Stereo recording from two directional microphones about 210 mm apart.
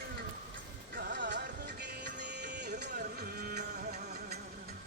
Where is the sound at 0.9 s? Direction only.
55° right (ahead or behind).